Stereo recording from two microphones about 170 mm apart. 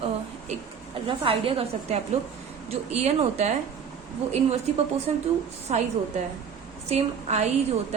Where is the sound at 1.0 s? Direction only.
30° right (ahead or behind).